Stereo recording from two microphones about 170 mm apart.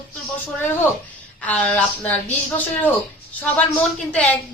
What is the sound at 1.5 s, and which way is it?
Speech, 10° left (ahead or behind).